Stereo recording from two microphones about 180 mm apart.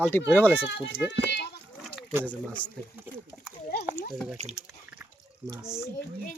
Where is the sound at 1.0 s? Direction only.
70° left (ahead or behind).